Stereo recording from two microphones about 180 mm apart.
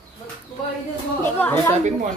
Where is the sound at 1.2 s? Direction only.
10° left (ahead or behind).